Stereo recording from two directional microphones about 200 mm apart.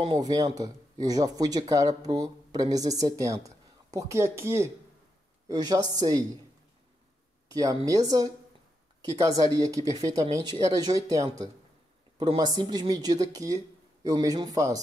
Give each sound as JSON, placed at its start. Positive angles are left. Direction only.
{"t": 0.0, "sound": "speech", "side_deg": -20}
{"t": 7.4, "sound": "speech", "side_deg": -15}